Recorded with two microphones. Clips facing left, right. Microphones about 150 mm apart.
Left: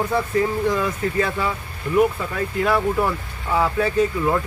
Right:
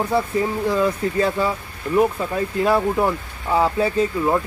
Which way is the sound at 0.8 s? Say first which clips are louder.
Right 3 dB; 30° right (ahead or behind).